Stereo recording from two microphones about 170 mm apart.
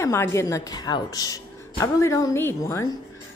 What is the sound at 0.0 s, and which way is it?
Speech, 15° left (ahead or behind).